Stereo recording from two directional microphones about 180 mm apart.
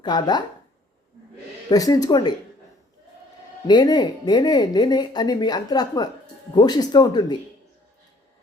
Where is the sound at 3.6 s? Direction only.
20° left (ahead or behind).